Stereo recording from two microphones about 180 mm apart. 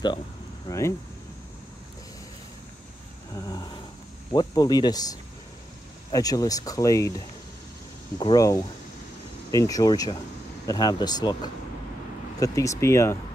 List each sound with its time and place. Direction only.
0.7 s speech: 15° left (ahead or behind)
3.3 s speech: 20° left (ahead or behind)